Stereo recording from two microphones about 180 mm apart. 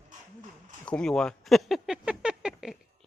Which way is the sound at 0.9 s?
5° left (ahead or behind).